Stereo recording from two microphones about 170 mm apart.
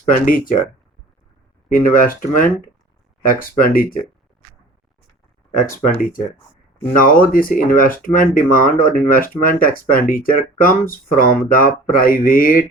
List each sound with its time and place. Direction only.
0.1 s speech: 55° left (ahead or behind)
1.7 s speech: 55° left (ahead or behind)
6.0 s speech: 55° left (ahead or behind)